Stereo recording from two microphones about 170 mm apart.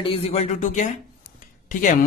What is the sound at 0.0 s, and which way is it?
Speech, 35° left (ahead or behind).